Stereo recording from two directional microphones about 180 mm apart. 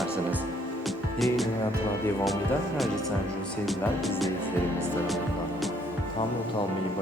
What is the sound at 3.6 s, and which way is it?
Speech, centre (ahead or behind).